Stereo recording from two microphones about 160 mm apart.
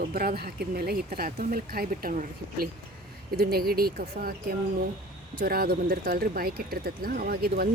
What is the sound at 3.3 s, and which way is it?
Speech, 70° right (ahead or behind).